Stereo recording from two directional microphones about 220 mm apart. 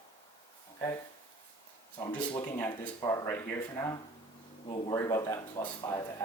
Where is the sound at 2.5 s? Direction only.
10° left (ahead or behind).